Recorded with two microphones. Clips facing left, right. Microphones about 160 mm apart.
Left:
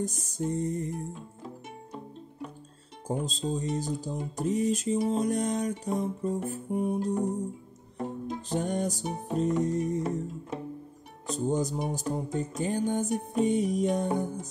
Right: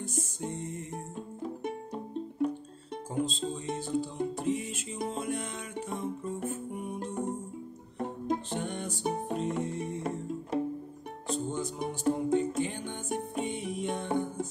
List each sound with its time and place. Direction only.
0.0 s speech: 40° left (ahead or behind)
3.1 s speech: 40° left (ahead or behind)
8.5 s speech: 40° left (ahead or behind)
11.2 s speech: 40° left (ahead or behind)